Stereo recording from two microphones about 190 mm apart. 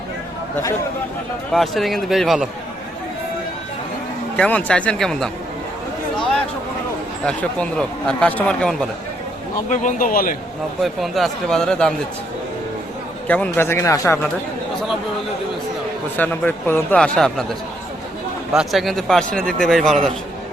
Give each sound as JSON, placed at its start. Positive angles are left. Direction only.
{"t": 1.5, "sound": "speech", "side_deg": 0}
{"t": 4.4, "sound": "speech", "side_deg": 5}
{"t": 7.3, "sound": "speech", "side_deg": 5}
{"t": 9.6, "sound": "speech", "side_deg": 45}
{"t": 10.8, "sound": "speech", "side_deg": 0}
{"t": 13.2, "sound": "speech", "side_deg": 5}
{"t": 16.1, "sound": "speech", "side_deg": 10}
{"t": 18.5, "sound": "speech", "side_deg": 0}